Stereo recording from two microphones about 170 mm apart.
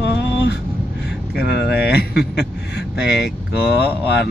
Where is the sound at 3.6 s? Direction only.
70° left (ahead or behind).